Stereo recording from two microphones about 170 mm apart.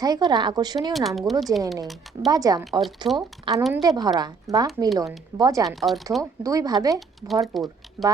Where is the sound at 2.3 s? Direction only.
20° right (ahead or behind).